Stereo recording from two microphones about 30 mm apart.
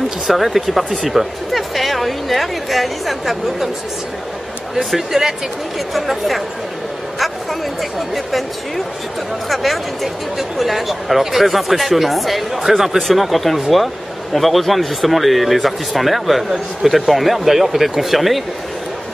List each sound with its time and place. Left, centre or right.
0.3 s speech: centre
4.9 s a man's voice: centre
8.1 s a man's voice: centre